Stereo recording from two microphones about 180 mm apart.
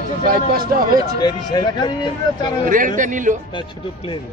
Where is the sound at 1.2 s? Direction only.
25° left (ahead or behind).